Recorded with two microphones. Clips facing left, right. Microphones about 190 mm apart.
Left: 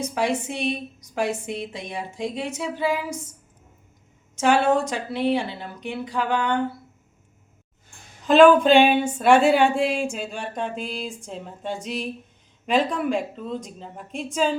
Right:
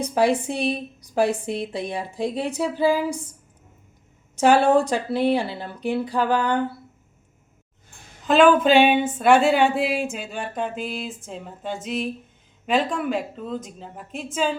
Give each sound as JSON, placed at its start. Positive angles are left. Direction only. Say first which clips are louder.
{"t": 0.0, "sound": "a woman's voice", "louder": "right 4 dB", "side_deg": -35}
{"t": 4.4, "sound": "a woman's voice", "louder": "right 3 dB", "side_deg": -35}
{"t": 8.3, "sound": "speech", "louder": "left 2 dB", "side_deg": 0}